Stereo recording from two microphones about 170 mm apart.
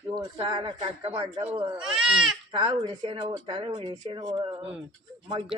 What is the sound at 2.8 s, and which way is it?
A woman's voice, 25° right (ahead or behind).